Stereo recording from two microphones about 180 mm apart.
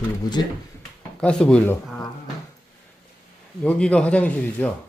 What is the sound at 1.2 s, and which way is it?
Speech, 5° left (ahead or behind).